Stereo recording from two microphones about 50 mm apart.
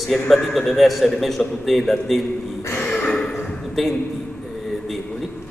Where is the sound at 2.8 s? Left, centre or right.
Left.